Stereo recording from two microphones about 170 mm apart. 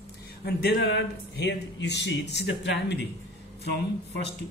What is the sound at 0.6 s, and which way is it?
Speech, 75° left (ahead or behind).